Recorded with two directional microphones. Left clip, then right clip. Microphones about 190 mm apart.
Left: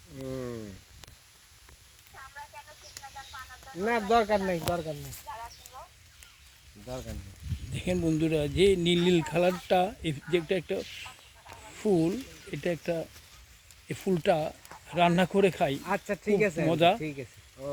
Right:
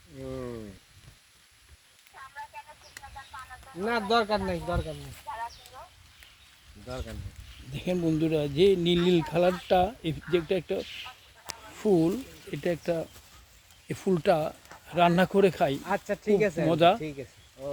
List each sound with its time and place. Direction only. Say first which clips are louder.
0.3 s a sound: even; 30° left (ahead or behind)
3.7 s speech: left 1 dB; 30° left (ahead or behind)
6.8 s speech: right 1 dB; 45° left (ahead or behind)
7.7 s speech: right 1 dB; 10° right (ahead or behind)
15.8 s speech: right 1 dB; 40° left (ahead or behind)
16.6 s speech: right 3 dB; 10° right (ahead or behind)
17.0 s a sound: even; 40° left (ahead or behind)